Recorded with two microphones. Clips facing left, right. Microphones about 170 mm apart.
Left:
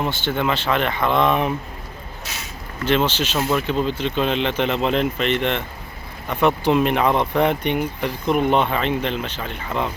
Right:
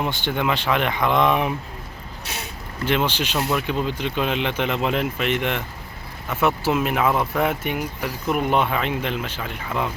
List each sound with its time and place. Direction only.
0.0 s speech: 15° right (ahead or behind)
2.2 s speech: 60° right (ahead or behind)
2.8 s speech: 10° right (ahead or behind)